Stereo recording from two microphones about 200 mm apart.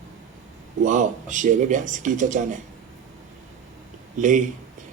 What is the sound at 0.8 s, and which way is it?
Speech, 40° right (ahead or behind).